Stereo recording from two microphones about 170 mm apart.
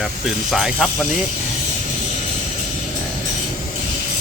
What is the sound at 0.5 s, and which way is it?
Speech, centre (ahead or behind).